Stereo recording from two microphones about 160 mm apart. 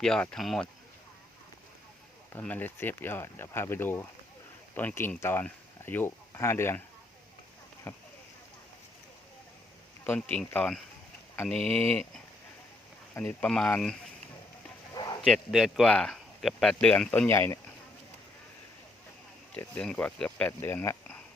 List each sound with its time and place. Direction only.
0.0 s speech: 5° left (ahead or behind)
2.3 s speech: 10° left (ahead or behind)
7.9 s speech: 15° left (ahead or behind)
10.0 s speech: 10° left (ahead or behind)
15.2 s speech: centre (ahead or behind); by 17.6 s 15° left (ahead or behind)
19.5 s speech: 5° left (ahead or behind)